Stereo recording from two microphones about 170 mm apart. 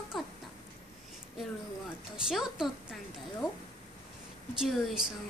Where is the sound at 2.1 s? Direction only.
5° right (ahead or behind).